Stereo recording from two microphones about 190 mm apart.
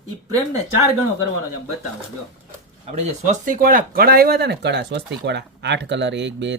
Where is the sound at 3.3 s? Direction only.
45° right (ahead or behind).